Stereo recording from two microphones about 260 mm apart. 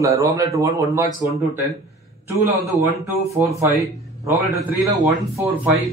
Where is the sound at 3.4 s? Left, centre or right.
Centre.